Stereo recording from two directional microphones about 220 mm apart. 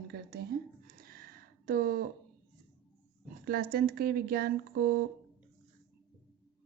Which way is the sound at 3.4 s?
40° right (ahead or behind).